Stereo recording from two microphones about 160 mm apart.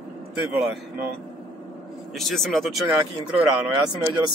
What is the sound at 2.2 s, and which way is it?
Speech, centre (ahead or behind).